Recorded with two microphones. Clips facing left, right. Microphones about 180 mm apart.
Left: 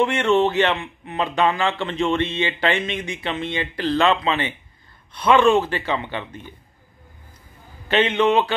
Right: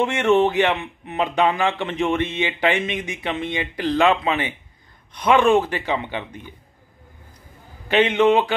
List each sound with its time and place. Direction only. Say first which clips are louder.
0.0 s speech: right 1 dB; 15° right (ahead or behind)
7.9 s speech: right 2 dB; 15° right (ahead or behind)